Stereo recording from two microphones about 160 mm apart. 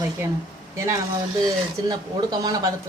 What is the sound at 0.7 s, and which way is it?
A woman's voice, 15° right (ahead or behind).